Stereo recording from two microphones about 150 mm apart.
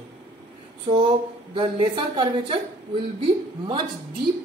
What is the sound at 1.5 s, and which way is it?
A woman's voice, 40° right (ahead or behind).